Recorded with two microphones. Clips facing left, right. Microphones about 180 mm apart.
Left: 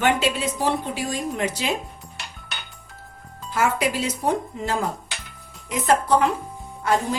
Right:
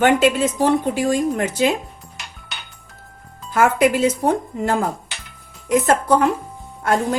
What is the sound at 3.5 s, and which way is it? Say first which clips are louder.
A woman's voice: right 7 dB; 50° right (ahead or behind).